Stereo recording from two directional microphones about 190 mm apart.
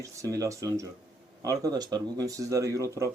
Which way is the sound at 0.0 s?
15° right (ahead or behind).